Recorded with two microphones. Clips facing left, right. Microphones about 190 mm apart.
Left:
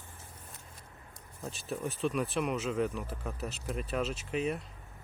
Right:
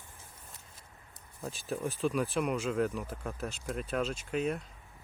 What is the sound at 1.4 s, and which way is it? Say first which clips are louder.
Speech: right 1 dB; centre (ahead or behind).